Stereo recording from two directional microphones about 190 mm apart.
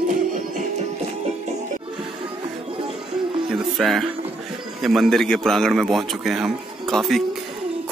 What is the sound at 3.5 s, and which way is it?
Music, centre (ahead or behind).